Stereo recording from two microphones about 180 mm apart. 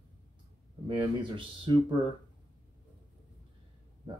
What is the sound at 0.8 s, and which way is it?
Speech, 30° right (ahead or behind).